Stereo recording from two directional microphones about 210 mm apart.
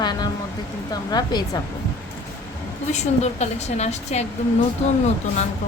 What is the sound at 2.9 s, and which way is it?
A woman's voice, 30° left (ahead or behind).